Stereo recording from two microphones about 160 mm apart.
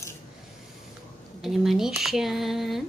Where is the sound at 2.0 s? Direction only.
Centre (ahead or behind).